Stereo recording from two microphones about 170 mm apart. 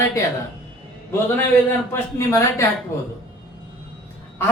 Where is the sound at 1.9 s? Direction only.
15° left (ahead or behind).